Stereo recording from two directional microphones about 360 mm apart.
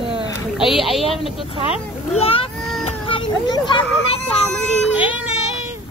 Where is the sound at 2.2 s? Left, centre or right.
Centre.